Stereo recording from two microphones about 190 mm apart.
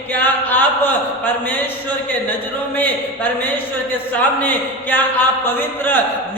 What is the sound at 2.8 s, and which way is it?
A man's voice, 10° left (ahead or behind).